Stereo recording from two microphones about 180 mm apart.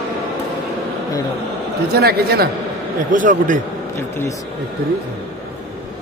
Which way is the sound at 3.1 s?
45° right (ahead or behind).